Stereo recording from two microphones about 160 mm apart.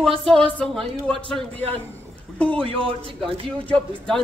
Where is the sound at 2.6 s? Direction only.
35° right (ahead or behind).